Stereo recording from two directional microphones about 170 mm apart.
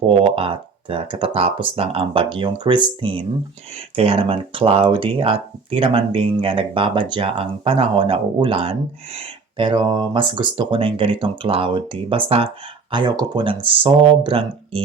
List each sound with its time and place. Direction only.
0.3 s speech: 35° right (ahead or behind)